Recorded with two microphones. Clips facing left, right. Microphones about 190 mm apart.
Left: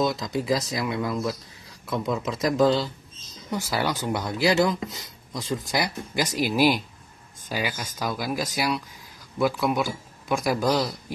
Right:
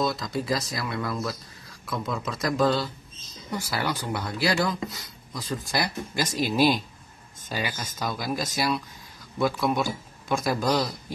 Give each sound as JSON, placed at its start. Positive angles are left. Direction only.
{"t": 0.0, "sound": "speech", "side_deg": 20}